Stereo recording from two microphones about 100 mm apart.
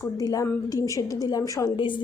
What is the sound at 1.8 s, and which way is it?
Speech, 55° left (ahead or behind).